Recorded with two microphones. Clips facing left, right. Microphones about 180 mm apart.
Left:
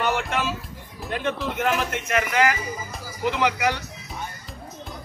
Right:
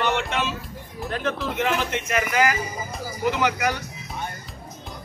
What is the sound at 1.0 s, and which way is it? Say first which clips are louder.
A man's voice: even; centre (ahead or behind).